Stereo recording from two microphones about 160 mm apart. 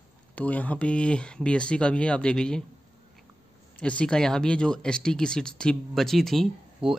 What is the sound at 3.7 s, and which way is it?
Speech, 5° left (ahead or behind).